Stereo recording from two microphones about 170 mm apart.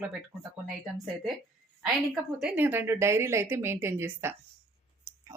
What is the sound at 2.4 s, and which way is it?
Speech, 10° right (ahead or behind).